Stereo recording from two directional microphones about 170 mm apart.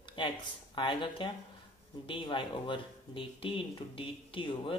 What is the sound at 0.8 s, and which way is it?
Speech, 30° left (ahead or behind).